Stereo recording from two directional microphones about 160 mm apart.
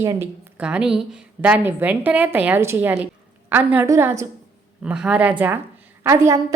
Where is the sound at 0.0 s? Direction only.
15° right (ahead or behind).